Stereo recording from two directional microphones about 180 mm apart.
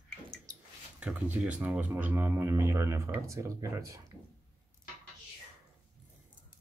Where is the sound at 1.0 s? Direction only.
5° right (ahead or behind).